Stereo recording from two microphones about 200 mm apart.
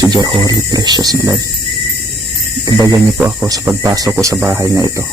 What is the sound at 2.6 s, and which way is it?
Speech, 20° right (ahead or behind).